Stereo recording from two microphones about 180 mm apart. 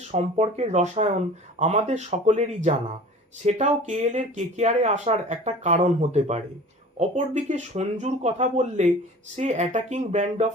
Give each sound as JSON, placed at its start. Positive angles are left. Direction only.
{"t": 0.1, "sound": "speech", "side_deg": -40}